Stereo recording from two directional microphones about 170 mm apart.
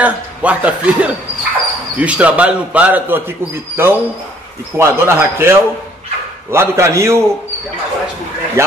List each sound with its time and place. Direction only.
0.0 s a man's voice: 10° right (ahead or behind)
6.5 s a man's voice: 15° right (ahead or behind)
8.6 s a man's voice: 15° right (ahead or behind)